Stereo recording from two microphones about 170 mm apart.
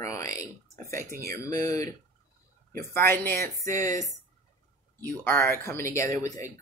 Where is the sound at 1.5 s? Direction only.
20° left (ahead or behind).